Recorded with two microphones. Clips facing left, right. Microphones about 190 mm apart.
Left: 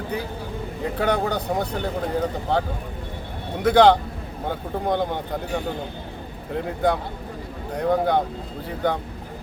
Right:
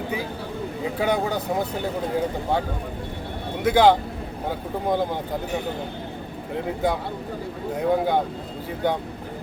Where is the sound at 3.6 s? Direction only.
10° right (ahead or behind).